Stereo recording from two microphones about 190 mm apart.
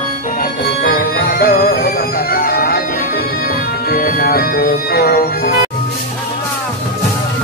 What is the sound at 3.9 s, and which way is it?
Music, 50° left (ahead or behind).